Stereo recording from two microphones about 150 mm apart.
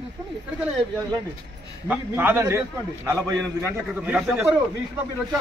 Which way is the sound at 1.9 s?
15° right (ahead or behind).